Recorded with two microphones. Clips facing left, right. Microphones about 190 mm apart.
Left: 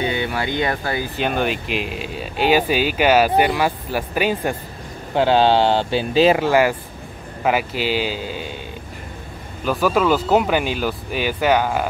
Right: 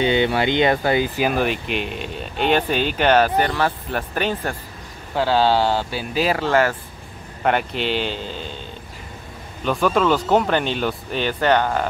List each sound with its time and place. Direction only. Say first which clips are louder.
0.0 s speech: right 4 dB; 25° right (ahead or behind)
1.1 s speech: right 1 dB; 5° right (ahead or behind)
5.1 s speech: left 3 dB; 20° left (ahead or behind)
6.4 s speech: left 2 dB; 10° left (ahead or behind)
9.7 s speech: left 1 dB; 5° left (ahead or behind)